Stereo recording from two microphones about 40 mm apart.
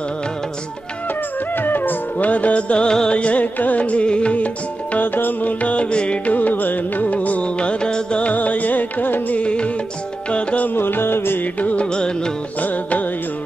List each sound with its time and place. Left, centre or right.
1.6 s music: left
2.1 s music: left
3.5 s music: left
5.0 s music: left
5.6 s music: left
6.3 s music: left
7.8 s music: left
8.3 s music: left
9.4 s music: left
10.7 s music: left
11.6 s music: left